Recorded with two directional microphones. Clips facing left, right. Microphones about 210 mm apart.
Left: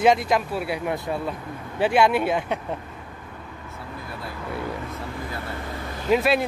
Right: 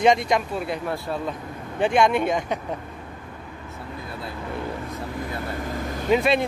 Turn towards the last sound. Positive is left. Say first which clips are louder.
# even
turn(degrees=5)  # may be behind; listen again after turning